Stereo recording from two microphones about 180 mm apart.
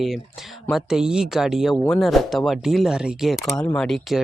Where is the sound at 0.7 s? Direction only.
5° right (ahead or behind).